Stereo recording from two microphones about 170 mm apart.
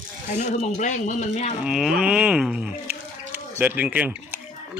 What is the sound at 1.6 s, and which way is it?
Speech, centre (ahead or behind).